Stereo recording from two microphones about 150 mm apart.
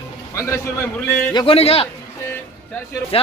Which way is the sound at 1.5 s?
40° left (ahead or behind).